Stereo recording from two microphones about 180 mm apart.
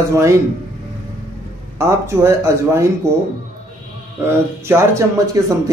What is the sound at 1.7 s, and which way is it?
Speech, 15° right (ahead or behind).